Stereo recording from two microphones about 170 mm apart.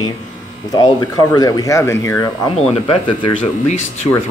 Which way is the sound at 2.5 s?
30° left (ahead or behind).